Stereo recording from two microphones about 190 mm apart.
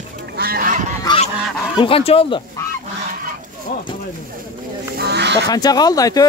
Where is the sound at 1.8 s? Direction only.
30° left (ahead or behind).